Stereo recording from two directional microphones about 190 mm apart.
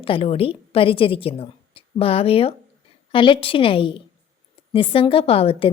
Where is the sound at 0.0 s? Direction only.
30° left (ahead or behind).